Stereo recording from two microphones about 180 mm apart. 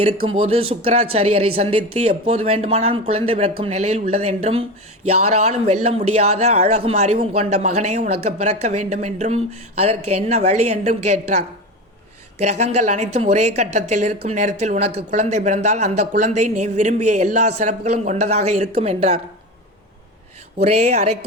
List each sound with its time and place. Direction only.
0.3 s a man's voice: 30° right (ahead or behind)
20.6 s a man's voice: 35° right (ahead or behind)